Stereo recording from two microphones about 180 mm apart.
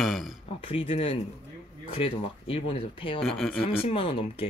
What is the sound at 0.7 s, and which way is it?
Speech, 30° left (ahead or behind).